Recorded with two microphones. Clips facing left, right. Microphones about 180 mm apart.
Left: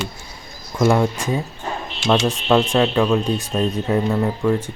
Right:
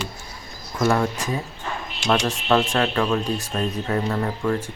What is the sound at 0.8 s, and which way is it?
Speech, 20° left (ahead or behind).